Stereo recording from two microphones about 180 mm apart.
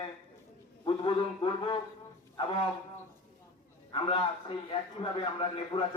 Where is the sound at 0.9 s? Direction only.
25° left (ahead or behind).